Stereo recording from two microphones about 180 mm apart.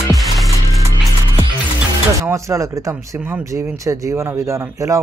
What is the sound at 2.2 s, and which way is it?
Speech, 15° right (ahead or behind).